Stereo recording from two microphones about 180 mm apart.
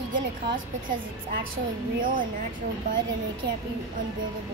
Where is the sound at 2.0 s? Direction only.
50° right (ahead or behind).